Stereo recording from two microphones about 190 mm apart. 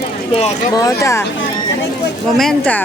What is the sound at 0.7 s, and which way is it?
Speech, 20° left (ahead or behind).